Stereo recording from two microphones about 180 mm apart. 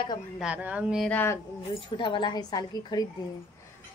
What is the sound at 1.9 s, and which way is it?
A woman's voice, 25° left (ahead or behind).